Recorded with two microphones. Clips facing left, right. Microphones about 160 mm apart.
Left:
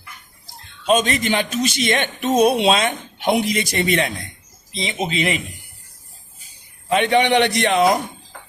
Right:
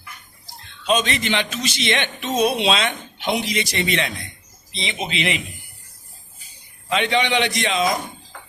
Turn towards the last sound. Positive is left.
turn(degrees=65)  # may be behind; listen again after turning